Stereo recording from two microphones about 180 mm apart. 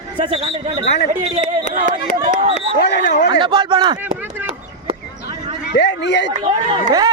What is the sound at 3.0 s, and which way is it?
Speech, 55° left (ahead or behind).